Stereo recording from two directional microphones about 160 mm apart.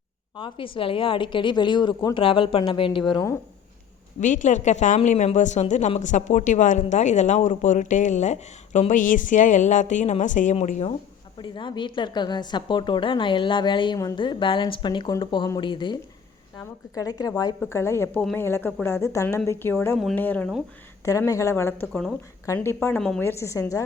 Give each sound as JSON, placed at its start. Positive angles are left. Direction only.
{"t": 0.3, "sound": "a woman's voice", "side_deg": 30}
{"t": 4.2, "sound": "speech", "side_deg": 50}
{"t": 11.3, "sound": "a woman's voice", "side_deg": 30}
{"t": 23.0, "sound": "a woman's voice", "side_deg": 5}
{"t": 23.2, "sound": "a woman's voice", "side_deg": 20}